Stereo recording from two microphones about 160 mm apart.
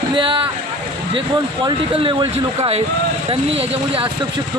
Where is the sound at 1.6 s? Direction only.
35° right (ahead or behind).